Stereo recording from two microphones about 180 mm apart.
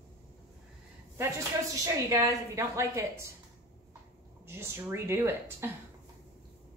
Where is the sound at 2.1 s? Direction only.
15° right (ahead or behind).